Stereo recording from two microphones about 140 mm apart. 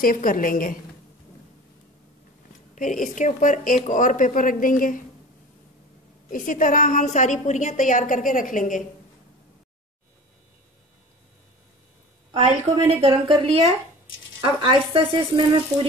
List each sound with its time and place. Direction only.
0.0 s a woman's voice: 85° left
2.7 s a woman's voice: 65° left (ahead or behind)
6.3 s a woman's voice: 70° left (ahead or behind)
12.4 s a woman's voice: 45° right (ahead or behind)